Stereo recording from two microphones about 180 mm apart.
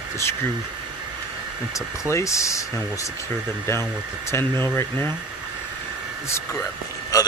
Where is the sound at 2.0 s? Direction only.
15° left (ahead or behind).